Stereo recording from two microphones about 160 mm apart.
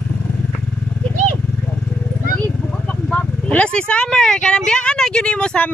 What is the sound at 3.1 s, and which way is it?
Vehicle, 10° left (ahead or behind).